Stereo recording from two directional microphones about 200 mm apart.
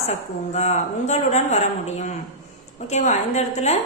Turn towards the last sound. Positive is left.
turn(degrees=35)  # may be behind; listen again after turning